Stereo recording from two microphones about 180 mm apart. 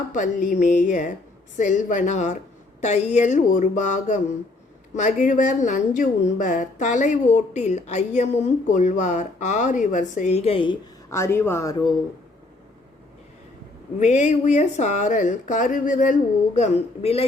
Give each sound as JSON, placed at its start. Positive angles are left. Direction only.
{"t": 0.1, "sound": "a woman's voice", "side_deg": 45}
{"t": 11.1, "sound": "speech", "side_deg": 15}
{"t": 14.0, "sound": "a woman's voice", "side_deg": 40}